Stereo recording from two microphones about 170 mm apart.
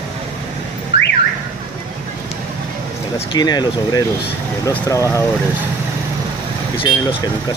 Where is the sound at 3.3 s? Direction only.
25° left (ahead or behind).